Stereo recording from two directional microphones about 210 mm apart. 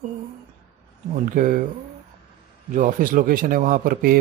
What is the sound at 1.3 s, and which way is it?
Speech, 40° right (ahead or behind).